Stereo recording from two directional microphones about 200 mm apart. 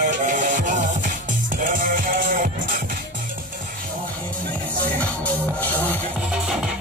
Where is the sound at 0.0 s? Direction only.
40° right (ahead or behind).